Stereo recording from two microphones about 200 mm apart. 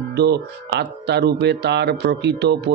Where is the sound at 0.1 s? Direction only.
55° right (ahead or behind).